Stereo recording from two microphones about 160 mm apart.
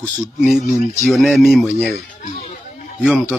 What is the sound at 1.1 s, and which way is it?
Speech, centre (ahead or behind).